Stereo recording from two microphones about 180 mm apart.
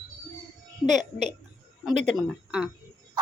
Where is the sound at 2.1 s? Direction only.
5° right (ahead or behind).